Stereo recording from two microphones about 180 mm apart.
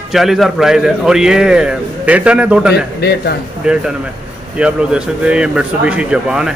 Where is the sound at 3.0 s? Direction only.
65° left (ahead or behind).